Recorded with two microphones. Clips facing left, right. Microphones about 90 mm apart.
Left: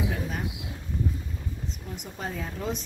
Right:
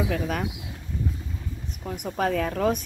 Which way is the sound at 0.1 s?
85° right.